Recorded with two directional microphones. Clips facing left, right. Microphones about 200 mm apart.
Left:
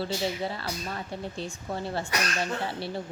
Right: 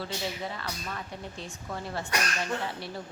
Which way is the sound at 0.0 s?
30° left (ahead or behind).